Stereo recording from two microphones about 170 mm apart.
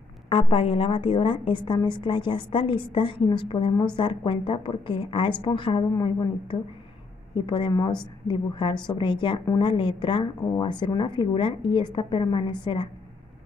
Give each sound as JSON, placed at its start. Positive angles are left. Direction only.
{"t": 0.3, "sound": "a woman's voice", "side_deg": 30}